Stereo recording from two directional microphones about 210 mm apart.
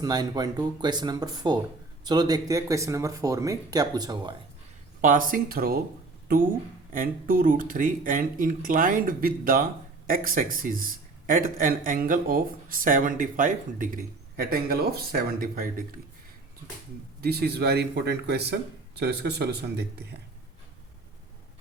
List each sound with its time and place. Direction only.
0.0 s speech: 20° right (ahead or behind)
4.9 s speech: 40° right (ahead or behind)
6.9 s speech: 40° right (ahead or behind)
17.2 s speech: 50° right (ahead or behind)